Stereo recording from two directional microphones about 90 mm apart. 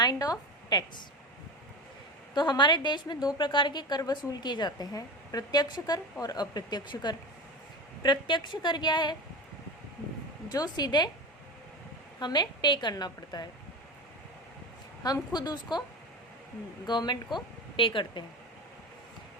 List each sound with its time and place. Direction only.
0.0 s a woman's voice: 45° left (ahead or behind)
2.3 s a woman's voice: 55° left (ahead or behind)
10.5 s a woman's voice: 45° left (ahead or behind)
12.2 s a woman's voice: 60° left (ahead or behind)
12.9 s a woman's voice: 50° left (ahead or behind)
15.0 s a woman's voice: 50° left (ahead or behind)
16.8 s a woman's voice: 55° left (ahead or behind)
17.3 s a woman's voice: 70° left (ahead or behind)